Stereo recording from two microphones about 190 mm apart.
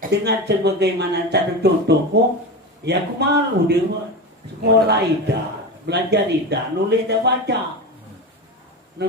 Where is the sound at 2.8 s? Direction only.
60° right (ahead or behind).